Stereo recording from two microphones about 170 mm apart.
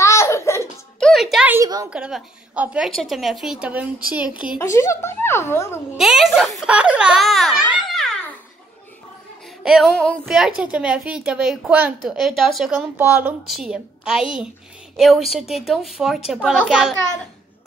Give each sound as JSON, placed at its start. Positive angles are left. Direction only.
{"t": 0.0, "sound": "laughter", "side_deg": 15}
{"t": 0.9, "sound": "music", "side_deg": 0}
{"t": 1.5, "sound": "a sound", "side_deg": -20}
{"t": 1.9, "sound": "a woman's voice", "side_deg": -5}
{"t": 4.6, "sound": "speech", "side_deg": 15}
{"t": 5.9, "sound": "a woman's voice", "side_deg": 0}
{"t": 9.6, "sound": "music", "side_deg": -5}
{"t": 10.0, "sound": "a woman's voice", "side_deg": 5}
{"t": 12.9, "sound": "a woman's voice", "side_deg": -10}